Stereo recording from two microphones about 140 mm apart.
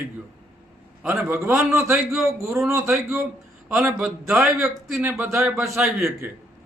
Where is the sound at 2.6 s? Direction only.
20° right (ahead or behind).